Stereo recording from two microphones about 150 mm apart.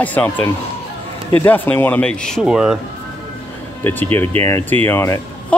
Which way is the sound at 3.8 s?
15° left (ahead or behind).